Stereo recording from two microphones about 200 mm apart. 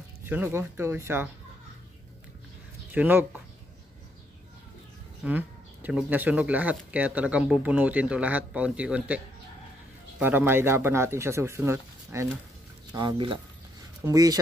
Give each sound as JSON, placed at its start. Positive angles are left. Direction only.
{"t": 0.2, "sound": "speech", "side_deg": -10}
{"t": 2.9, "sound": "speech", "side_deg": -10}
{"t": 5.2, "sound": "speech", "side_deg": -10}
{"t": 12.9, "sound": "speech", "side_deg": -25}